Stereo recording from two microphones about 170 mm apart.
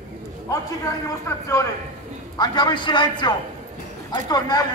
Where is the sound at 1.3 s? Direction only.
15° left (ahead or behind).